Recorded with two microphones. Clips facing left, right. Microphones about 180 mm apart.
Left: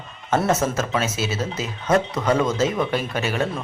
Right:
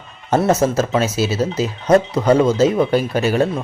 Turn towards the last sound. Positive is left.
turn(degrees=-35)  # may be behind; listen again after turning